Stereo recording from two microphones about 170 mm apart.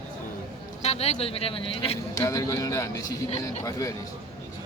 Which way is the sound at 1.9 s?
20° left (ahead or behind).